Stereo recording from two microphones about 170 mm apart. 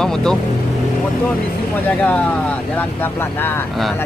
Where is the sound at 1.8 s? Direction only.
5° left (ahead or behind).